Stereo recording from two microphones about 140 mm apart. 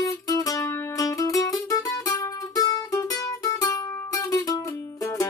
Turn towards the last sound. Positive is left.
turn(degrees=25)  # may be behind; listen again after turning